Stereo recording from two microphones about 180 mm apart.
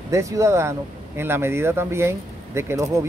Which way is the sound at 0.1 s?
15° right (ahead or behind).